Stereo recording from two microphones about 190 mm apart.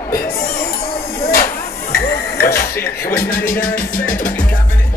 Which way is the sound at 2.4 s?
55° left (ahead or behind).